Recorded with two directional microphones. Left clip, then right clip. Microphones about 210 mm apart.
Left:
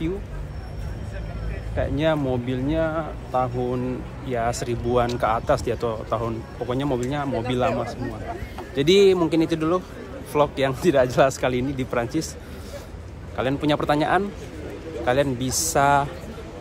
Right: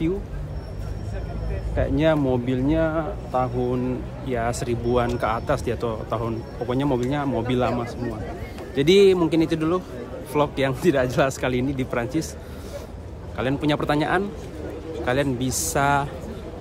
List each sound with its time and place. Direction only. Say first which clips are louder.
1.8 s speech: right 2 dB; 15° right (ahead or behind)
8.7 s speech: right 1 dB; 10° right (ahead or behind)
13.4 s speech: left 1 dB; 10° right (ahead or behind)